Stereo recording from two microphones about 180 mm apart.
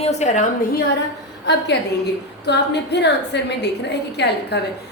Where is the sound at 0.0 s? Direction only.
40° left (ahead or behind).